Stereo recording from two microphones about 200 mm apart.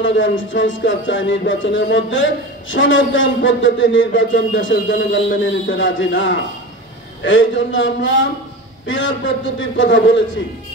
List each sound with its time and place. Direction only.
0.0 s a man's voice: 70° left (ahead or behind)